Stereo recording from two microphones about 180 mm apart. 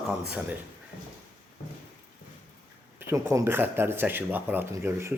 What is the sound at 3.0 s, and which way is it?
Speech, 15° right (ahead or behind).